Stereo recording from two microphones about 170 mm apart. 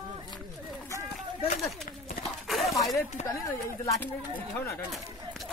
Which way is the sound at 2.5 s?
Centre (ahead or behind).